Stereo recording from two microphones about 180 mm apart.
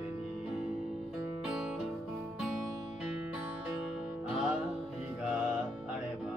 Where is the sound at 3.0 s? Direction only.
5° right (ahead or behind).